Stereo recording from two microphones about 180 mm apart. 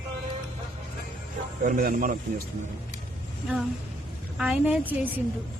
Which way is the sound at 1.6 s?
50° right (ahead or behind).